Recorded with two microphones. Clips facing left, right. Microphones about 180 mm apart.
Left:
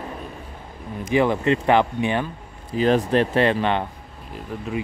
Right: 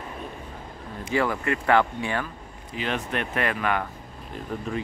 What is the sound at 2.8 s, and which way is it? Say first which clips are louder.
Speech: left 10 dB; 35° left (ahead or behind).